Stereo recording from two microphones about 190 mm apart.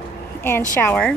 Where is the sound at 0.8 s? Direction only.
10° left (ahead or behind).